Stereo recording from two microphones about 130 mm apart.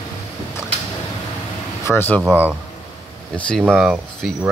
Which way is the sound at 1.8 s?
15° left (ahead or behind).